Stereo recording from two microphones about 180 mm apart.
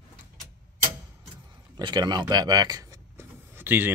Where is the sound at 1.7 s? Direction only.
25° right (ahead or behind).